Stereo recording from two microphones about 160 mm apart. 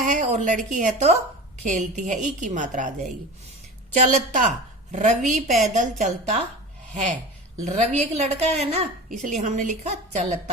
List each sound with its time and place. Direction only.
0.1 s a woman's voice: 50° right (ahead or behind)
3.9 s a woman's voice: 50° right (ahead or behind)
7.6 s a woman's voice: 45° right (ahead or behind)